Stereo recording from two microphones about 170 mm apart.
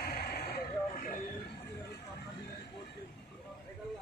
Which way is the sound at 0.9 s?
55° left (ahead or behind).